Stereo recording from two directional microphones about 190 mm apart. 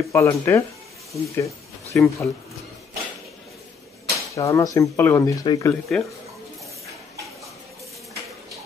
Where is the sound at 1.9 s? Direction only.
10° left (ahead or behind).